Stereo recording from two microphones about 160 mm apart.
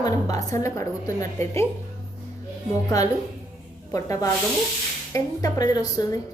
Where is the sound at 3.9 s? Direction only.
20° left (ahead or behind).